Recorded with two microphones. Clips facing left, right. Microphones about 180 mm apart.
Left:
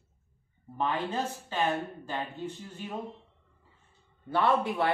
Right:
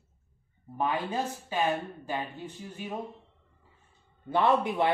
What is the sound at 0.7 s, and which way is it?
Speech, 10° right (ahead or behind).